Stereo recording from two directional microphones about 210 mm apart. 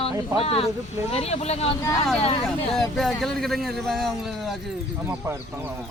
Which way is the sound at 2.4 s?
Centre (ahead or behind).